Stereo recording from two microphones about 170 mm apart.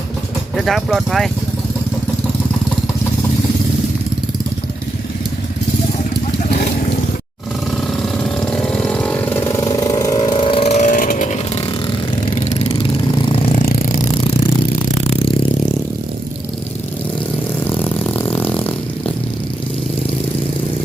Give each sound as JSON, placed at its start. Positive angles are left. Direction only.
{"t": 0.5, "sound": "speech", "side_deg": 0}
{"t": 8.2, "sound": "vehicle", "side_deg": 5}
{"t": 12.3, "sound": "engine", "side_deg": 40}
{"t": 13.6, "sound": "a sound", "side_deg": 55}
{"t": 17.7, "sound": "vehicle", "side_deg": 10}